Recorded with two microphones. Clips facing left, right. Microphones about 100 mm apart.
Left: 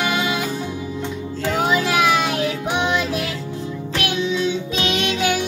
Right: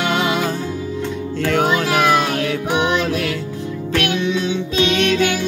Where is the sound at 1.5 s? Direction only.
65° right (ahead or behind).